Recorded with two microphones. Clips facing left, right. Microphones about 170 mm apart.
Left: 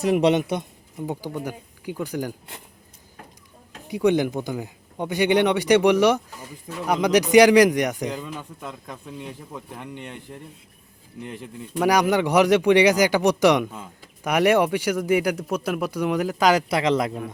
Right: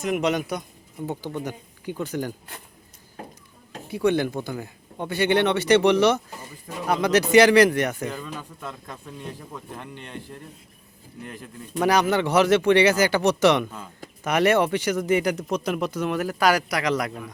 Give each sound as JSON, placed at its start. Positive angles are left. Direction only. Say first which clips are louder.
{"t": 0.0, "sound": "speech", "louder": "left 5 dB", "side_deg": 30}
{"t": 1.0, "sound": "a man's voice", "louder": "left 1 dB", "side_deg": 10}
{"t": 3.8, "sound": "a man's voice", "louder": "left 2 dB", "side_deg": 15}